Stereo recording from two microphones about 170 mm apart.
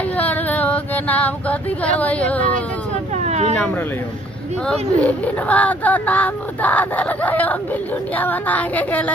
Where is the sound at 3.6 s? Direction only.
10° left (ahead or behind).